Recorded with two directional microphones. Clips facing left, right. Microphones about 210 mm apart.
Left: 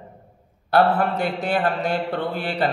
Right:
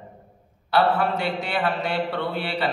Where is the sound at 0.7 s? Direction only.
50° left (ahead or behind).